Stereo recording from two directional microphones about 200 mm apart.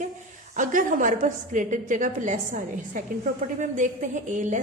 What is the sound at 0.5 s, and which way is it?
A woman's voice, 40° right (ahead or behind).